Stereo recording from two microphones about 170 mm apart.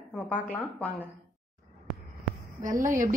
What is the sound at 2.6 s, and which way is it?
Speech, 50° right (ahead or behind).